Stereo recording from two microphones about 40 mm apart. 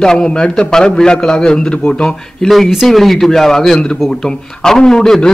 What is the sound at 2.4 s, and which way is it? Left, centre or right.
A man's voice, centre.